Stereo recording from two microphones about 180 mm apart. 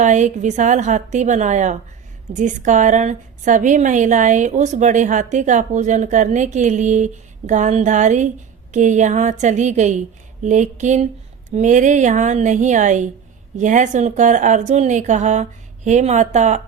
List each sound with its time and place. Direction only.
0.0 s a woman's voice: 40° right (ahead or behind)